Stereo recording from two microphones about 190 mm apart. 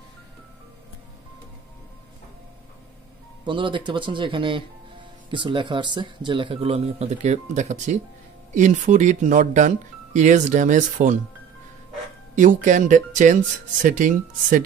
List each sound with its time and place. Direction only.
3.4 s speech: 25° right (ahead or behind); by 11.1 s 40° right (ahead or behind)
12.4 s speech: 40° right (ahead or behind)